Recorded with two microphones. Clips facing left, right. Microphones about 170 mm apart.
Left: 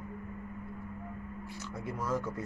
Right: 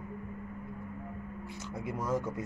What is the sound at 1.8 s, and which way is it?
Speech, 20° right (ahead or behind).